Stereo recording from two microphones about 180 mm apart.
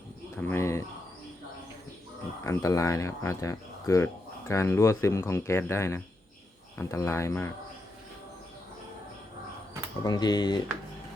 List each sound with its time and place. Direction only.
0.3 s a sound: 10° left (ahead or behind)
2.4 s speech: 15° left (ahead or behind)
10.0 s speech: 20° left (ahead or behind)